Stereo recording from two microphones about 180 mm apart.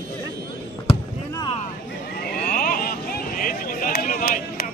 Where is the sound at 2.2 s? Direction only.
55° left (ahead or behind).